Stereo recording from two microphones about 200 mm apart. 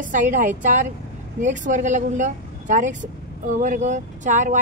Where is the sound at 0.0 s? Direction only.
40° right (ahead or behind).